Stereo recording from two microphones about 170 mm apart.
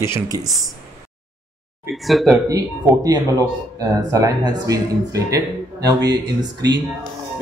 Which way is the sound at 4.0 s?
20° right (ahead or behind).